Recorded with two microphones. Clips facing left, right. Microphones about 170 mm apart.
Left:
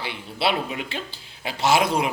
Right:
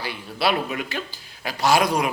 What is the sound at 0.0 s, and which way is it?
A man's voice, 25° left (ahead or behind).